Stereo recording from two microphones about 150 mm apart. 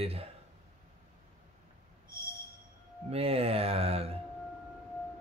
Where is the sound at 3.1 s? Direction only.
40° right (ahead or behind).